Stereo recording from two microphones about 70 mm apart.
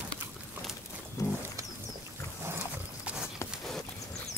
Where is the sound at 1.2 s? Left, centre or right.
Left.